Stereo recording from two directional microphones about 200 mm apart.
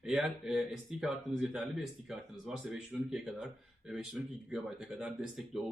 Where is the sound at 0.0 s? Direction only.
5° right (ahead or behind).